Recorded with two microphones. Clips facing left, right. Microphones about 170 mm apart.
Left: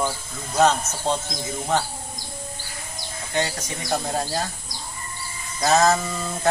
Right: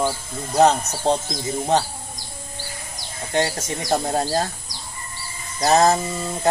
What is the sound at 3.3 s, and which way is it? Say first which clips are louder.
Speech: right 4 dB; 45° right (ahead or behind).